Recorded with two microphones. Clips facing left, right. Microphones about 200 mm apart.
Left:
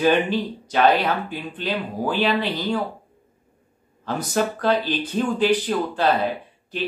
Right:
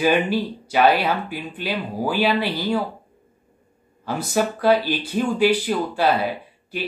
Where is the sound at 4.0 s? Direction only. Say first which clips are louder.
Right 1 dB; 10° right (ahead or behind).